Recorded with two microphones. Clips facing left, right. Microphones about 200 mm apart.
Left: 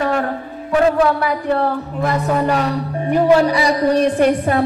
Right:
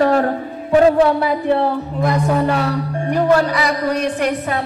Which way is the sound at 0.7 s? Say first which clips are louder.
Right 2 dB; 25° right (ahead or behind).